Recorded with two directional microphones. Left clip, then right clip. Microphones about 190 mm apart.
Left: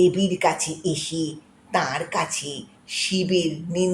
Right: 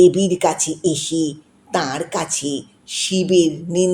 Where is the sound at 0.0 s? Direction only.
35° right (ahead or behind).